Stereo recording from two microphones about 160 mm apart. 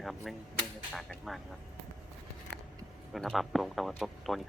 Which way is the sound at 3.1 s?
Centre (ahead or behind).